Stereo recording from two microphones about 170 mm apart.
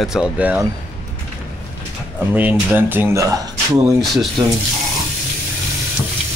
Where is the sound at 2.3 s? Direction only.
10° right (ahead or behind).